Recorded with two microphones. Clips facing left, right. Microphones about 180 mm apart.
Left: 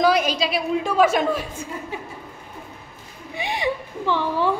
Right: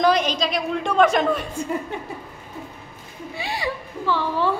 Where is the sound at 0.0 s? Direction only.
5° left (ahead or behind).